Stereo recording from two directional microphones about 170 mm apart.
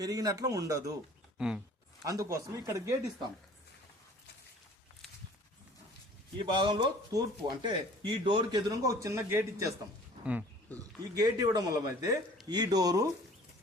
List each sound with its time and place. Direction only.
0.0 s speech: 20° right (ahead or behind)
1.4 s speech: 5° right (ahead or behind)
2.0 s speech: 20° right (ahead or behind)
6.4 s speech: 30° right (ahead or behind)
10.8 s speech: 20° right (ahead or behind)